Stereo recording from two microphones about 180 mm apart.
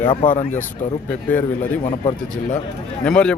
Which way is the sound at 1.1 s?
10° left (ahead or behind).